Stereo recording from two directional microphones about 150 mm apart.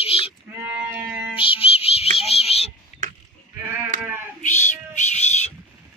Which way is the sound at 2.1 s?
40° left (ahead or behind).